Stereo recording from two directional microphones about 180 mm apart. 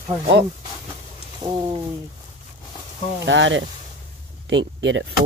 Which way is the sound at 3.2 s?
90° right.